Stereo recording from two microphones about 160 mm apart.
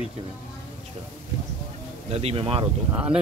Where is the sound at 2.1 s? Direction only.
40° right (ahead or behind).